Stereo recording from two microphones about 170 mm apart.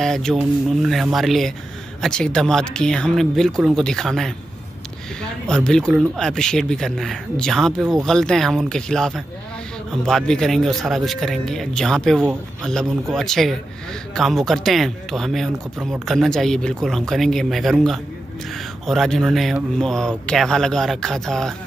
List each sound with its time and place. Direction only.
0.0 s speech: centre (ahead or behind)